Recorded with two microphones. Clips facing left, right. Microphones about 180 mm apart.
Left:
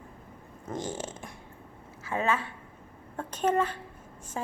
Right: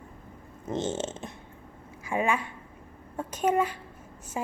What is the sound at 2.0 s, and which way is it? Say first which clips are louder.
A woman's voice: right 1 dB; 15° right (ahead or behind).